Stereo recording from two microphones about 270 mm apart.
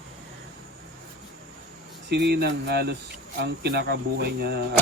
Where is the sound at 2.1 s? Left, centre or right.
Right.